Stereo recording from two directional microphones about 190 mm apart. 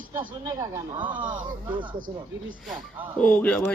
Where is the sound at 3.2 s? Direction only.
5° left (ahead or behind).